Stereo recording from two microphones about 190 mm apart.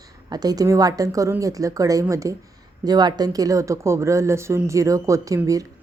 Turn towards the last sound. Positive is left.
turn(degrees=-15)  # may be behind; listen again after turning